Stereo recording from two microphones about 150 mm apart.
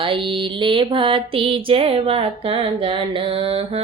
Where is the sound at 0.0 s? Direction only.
35° right (ahead or behind).